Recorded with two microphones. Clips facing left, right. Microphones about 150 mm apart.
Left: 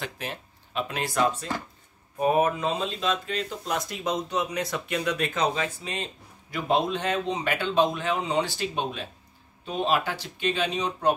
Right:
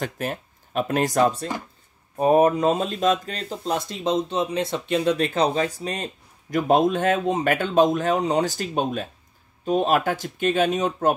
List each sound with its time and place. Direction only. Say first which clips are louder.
0.0 s speech: right 7 dB; 45° right (ahead or behind)